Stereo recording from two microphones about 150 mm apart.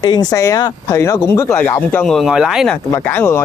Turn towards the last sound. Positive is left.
turn(degrees=15)  # may be behind; listen again after turning